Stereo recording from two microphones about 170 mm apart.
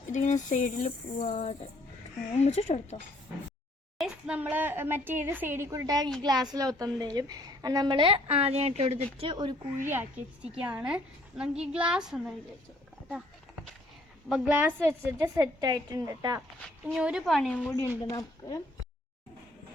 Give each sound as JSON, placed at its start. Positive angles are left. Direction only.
{"t": 0.1, "sound": "speech", "side_deg": 45}
{"t": 3.9, "sound": "a woman's voice", "side_deg": -5}
{"t": 9.7, "sound": "a woman's voice", "side_deg": -10}
{"t": 14.3, "sound": "a woman's voice", "side_deg": -5}
{"t": 16.8, "sound": "a woman's voice", "side_deg": -5}
{"t": 17.7, "sound": "speech", "side_deg": 15}